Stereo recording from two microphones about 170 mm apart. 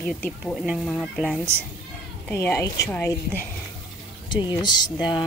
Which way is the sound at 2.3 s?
15° left (ahead or behind).